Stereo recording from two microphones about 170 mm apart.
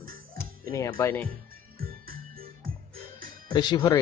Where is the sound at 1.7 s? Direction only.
60° right (ahead or behind).